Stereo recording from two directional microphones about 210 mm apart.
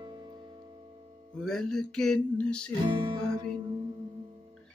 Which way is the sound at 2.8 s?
25° right (ahead or behind).